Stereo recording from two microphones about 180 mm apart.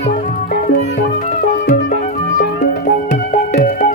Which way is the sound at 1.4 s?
55° left (ahead or behind).